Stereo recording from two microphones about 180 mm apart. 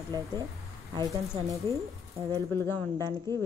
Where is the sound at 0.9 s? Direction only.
25° right (ahead or behind).